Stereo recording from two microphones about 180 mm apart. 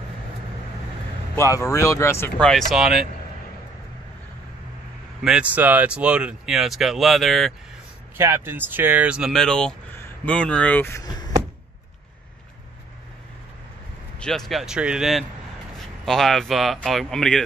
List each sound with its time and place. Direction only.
1.3 s speech: 15° left (ahead or behind)
2.7 s speech: centre (ahead or behind)
5.2 s speech: 5° right (ahead or behind)
8.2 s speech: 15° right (ahead or behind); by 11.3 s 20° left (ahead or behind)
14.2 s speech: centre (ahead or behind)